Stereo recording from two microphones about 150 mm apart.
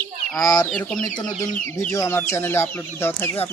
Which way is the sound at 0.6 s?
5° left (ahead or behind).